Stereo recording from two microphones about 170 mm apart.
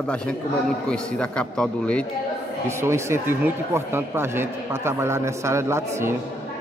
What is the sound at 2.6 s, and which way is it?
Speech, 15° right (ahead or behind).